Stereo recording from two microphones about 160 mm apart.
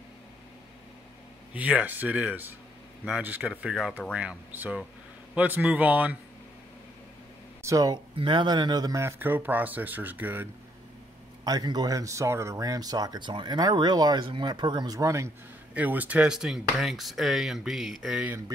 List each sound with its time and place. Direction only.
1.5 s speech: 10° right (ahead or behind)
7.6 s speech: 20° right (ahead or behind)
11.4 s speech: 25° right (ahead or behind); by 18.3 s 5° right (ahead or behind)